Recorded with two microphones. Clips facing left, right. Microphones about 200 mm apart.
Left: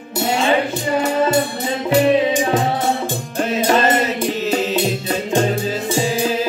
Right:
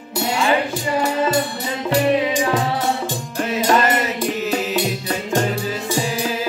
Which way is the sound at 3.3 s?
25° left (ahead or behind).